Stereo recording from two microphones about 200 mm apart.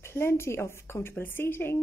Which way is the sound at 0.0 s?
10° left (ahead or behind).